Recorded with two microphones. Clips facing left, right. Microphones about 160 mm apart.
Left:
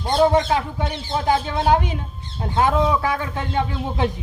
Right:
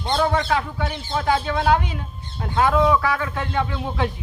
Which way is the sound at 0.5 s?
25° left (ahead or behind).